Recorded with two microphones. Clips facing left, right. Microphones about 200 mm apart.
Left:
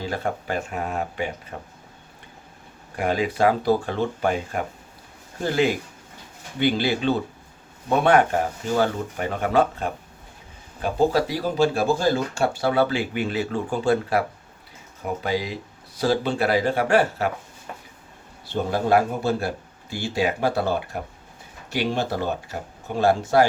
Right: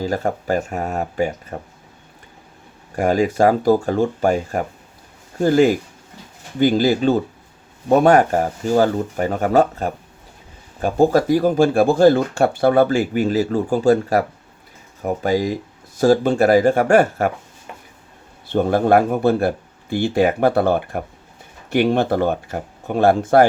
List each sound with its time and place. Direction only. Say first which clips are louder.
0.0 s speech: right 6 dB; 40° right (ahead or behind)
2.9 s speech: right 6 dB; 40° right (ahead or behind)
18.4 s speech: right 7 dB; 55° right (ahead or behind)